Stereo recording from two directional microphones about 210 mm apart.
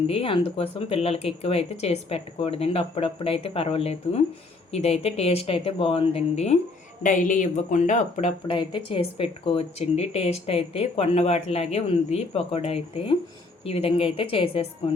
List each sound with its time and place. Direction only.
0.1 s speech: 25° left (ahead or behind)